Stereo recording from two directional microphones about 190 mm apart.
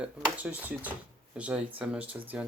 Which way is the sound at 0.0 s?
10° right (ahead or behind).